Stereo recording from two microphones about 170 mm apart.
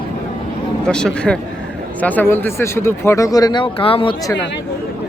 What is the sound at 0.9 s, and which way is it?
Speech, 5° left (ahead or behind).